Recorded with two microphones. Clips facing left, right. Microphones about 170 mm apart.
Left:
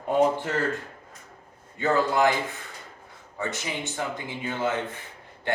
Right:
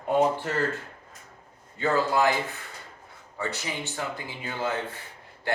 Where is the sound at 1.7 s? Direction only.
20° left (ahead or behind).